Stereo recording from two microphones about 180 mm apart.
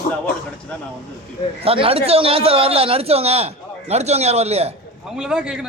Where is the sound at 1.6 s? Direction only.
30° right (ahead or behind).